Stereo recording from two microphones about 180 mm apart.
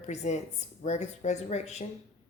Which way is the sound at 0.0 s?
40° left (ahead or behind).